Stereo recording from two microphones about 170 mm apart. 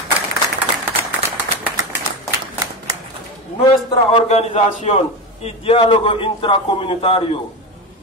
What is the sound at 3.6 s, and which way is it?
A man's voice, 35° left (ahead or behind).